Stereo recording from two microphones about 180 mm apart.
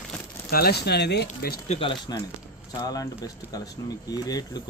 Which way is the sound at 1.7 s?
30° left (ahead or behind).